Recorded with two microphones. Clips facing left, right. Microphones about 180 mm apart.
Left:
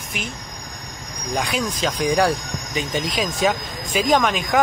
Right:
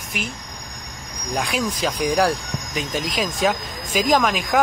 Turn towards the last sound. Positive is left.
turn(degrees=0)  # may be behind; listen again after turning